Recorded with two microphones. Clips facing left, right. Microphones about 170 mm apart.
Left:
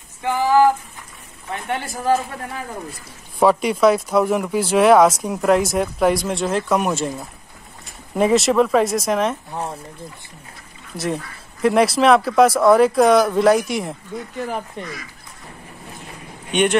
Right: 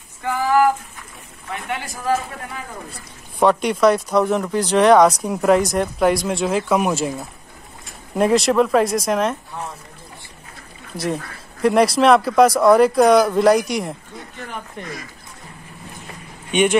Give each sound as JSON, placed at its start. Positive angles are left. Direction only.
{"t": 0.2, "sound": "a sound", "side_deg": 20}
{"t": 1.7, "sound": "a man's voice", "side_deg": 35}
{"t": 3.3, "sound": "speech", "side_deg": 0}
{"t": 8.2, "sound": "speech", "side_deg": 0}
{"t": 11.6, "sound": "speech", "side_deg": 0}
{"t": 16.5, "sound": "speech", "side_deg": 0}